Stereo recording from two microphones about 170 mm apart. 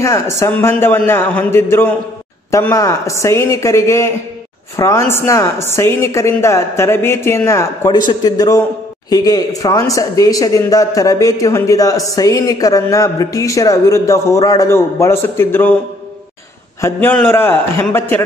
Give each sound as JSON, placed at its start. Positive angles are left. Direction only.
{"t": 0.0, "sound": "speech", "side_deg": 15}
{"t": 16.8, "sound": "speech", "side_deg": 10}